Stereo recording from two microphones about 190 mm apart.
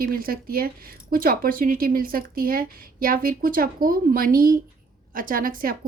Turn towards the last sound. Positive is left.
turn(degrees=-50)  # may be behind; listen again after turning